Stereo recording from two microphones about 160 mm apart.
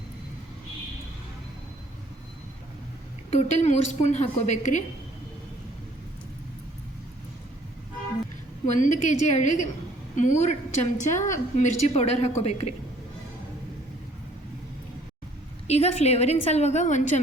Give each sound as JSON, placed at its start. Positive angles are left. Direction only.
{"t": 3.2, "sound": "a woman's voice", "side_deg": 45}
{"t": 8.6, "sound": "a woman's voice", "side_deg": 50}
{"t": 15.6, "sound": "a woman's voice", "side_deg": 40}